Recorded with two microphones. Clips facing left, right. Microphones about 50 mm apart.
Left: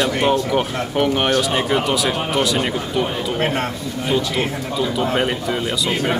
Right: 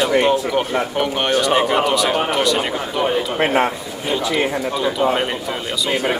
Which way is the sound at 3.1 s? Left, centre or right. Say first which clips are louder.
Right 4 dB; centre.